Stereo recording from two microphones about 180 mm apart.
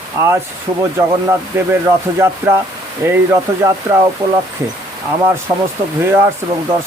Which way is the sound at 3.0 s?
15° right (ahead or behind).